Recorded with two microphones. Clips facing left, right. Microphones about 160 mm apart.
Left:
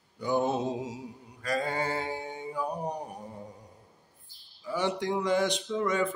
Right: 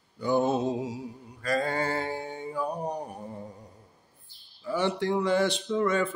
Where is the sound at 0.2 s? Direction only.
15° left (ahead or behind).